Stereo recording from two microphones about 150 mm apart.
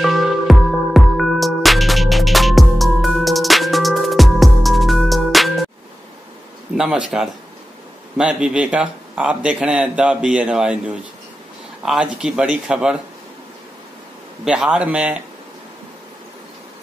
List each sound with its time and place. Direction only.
0.0 s music: centre (ahead or behind)
6.8 s a man's voice: 5° right (ahead or behind)
14.4 s speech: 5° right (ahead or behind)